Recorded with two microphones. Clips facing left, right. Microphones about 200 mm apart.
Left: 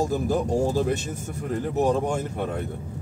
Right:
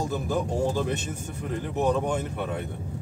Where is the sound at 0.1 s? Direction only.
40° left (ahead or behind).